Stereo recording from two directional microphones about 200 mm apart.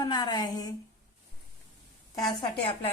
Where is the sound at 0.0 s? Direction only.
20° left (ahead or behind).